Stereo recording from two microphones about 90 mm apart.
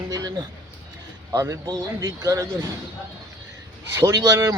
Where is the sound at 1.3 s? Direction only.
40° right (ahead or behind).